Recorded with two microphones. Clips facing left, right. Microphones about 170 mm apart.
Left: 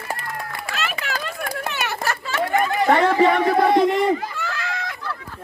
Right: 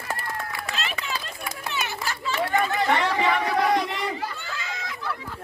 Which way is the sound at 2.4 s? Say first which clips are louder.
Left 4 dB; 45° left (ahead or behind).